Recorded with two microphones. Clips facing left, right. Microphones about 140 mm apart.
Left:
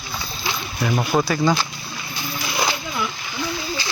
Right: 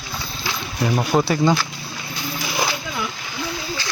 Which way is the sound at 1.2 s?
25° right (ahead or behind).